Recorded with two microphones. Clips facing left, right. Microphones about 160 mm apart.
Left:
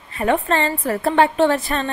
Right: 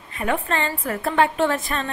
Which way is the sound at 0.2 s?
35° left (ahead or behind).